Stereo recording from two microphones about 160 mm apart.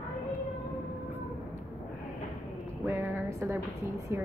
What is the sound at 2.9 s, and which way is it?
A woman's voice, 15° right (ahead or behind).